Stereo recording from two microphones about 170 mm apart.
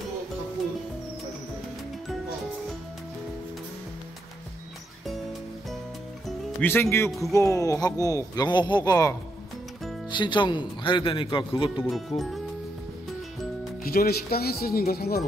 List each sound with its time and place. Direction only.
6.6 s speech: 15° left (ahead or behind)
7.1 s speech: centre (ahead or behind)
7.3 s speech: 20° left (ahead or behind)
10.1 s speech: 25° left (ahead or behind)
11.7 s speech: centre (ahead or behind)
13.8 s speech: 65° left (ahead or behind)